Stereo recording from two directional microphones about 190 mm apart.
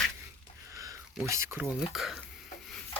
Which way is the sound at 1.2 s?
15° right (ahead or behind).